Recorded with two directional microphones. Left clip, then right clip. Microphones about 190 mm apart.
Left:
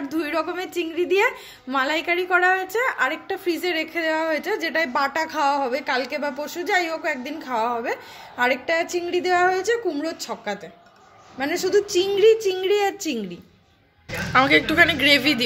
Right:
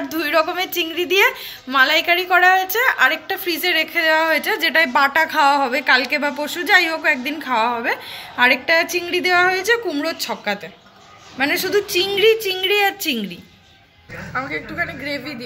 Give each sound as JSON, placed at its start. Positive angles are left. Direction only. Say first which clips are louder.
{"t": 0.1, "sound": "a woman's voice", "louder": "right 7 dB", "side_deg": 15}
{"t": 14.3, "sound": "a woman's voice", "louder": "left 9 dB", "side_deg": 30}